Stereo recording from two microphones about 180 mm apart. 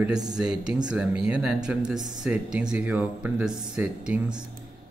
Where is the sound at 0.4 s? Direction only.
5° right (ahead or behind).